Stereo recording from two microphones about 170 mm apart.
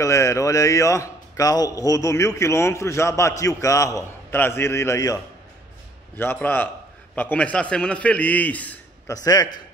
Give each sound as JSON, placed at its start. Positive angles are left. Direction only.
{"t": 0.0, "sound": "a man's voice", "side_deg": 15}
{"t": 9.1, "sound": "a man's voice", "side_deg": 20}